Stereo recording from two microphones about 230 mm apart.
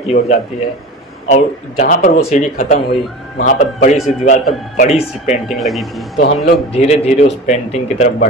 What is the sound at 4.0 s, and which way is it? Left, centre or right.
Speech, centre.